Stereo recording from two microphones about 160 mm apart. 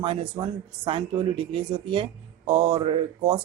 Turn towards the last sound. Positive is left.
turn(degrees=-30)  # may be behind; listen again after turning